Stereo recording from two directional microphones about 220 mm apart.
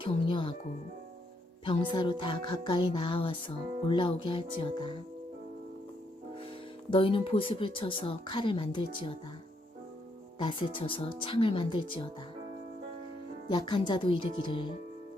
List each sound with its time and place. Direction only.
0.0 s music: 20° left (ahead or behind)
1.6 s music: 20° left (ahead or behind)
6.9 s music: 25° left (ahead or behind)
10.4 s music: 20° left (ahead or behind)
13.5 s music: 20° left (ahead or behind)